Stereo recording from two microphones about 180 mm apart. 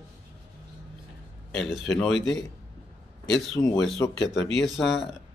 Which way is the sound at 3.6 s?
20° left (ahead or behind).